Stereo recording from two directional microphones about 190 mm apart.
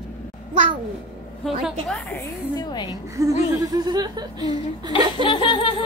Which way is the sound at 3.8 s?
20° right (ahead or behind).